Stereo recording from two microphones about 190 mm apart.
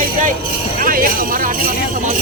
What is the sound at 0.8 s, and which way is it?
Jingle bell, 45° right (ahead or behind).